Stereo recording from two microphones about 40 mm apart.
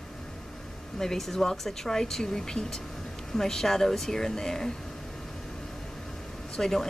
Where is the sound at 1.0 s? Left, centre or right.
Centre.